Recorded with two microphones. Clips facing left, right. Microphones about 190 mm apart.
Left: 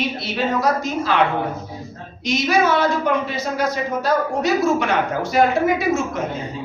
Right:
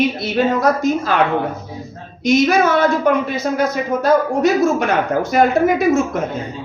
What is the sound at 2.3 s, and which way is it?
A woman's voice, 50° right (ahead or behind).